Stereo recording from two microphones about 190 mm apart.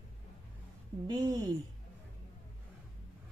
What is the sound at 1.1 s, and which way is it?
Speech, 20° right (ahead or behind).